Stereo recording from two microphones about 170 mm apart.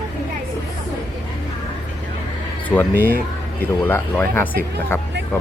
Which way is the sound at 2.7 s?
10° left (ahead or behind).